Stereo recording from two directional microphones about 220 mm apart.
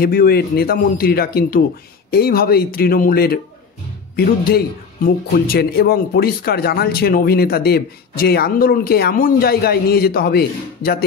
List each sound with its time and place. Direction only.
0.0 s speech: 45° left (ahead or behind)